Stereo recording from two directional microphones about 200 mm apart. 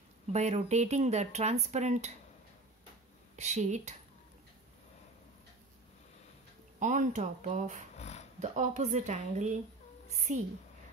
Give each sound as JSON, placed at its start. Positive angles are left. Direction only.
{"t": 0.3, "sound": "speech", "side_deg": -35}
{"t": 3.3, "sound": "speech", "side_deg": -35}
{"t": 6.8, "sound": "speech", "side_deg": -40}